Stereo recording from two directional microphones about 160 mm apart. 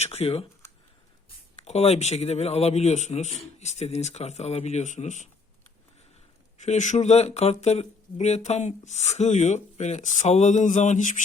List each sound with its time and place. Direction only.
0.0 s speech: 40° left (ahead or behind)
1.5 s speech: 40° left (ahead or behind)
6.6 s speech: 50° left (ahead or behind)